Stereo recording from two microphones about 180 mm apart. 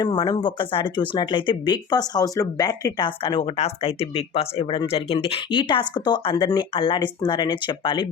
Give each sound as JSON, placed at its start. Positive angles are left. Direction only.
{"t": 0.0, "sound": "speech", "side_deg": 25}